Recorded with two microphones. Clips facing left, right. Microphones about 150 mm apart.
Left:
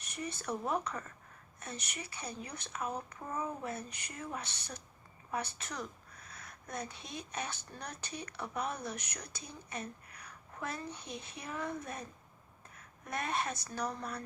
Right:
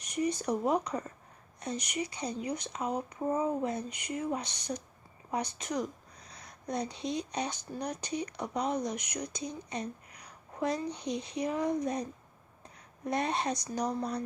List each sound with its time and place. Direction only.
0.0 s a woman's voice: 15° right (ahead or behind)
3.2 s a woman's voice: 30° right (ahead or behind)
13.1 s speech: 20° right (ahead or behind)
13.9 s speech: 35° right (ahead or behind)